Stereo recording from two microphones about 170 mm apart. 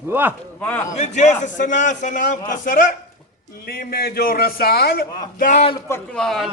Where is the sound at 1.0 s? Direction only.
45° left (ahead or behind).